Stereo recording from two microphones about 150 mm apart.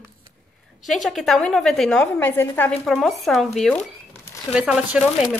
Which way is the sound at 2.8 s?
Centre (ahead or behind).